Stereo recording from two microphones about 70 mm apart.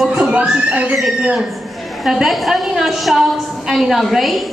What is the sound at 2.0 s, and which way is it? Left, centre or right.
A woman's voice, centre.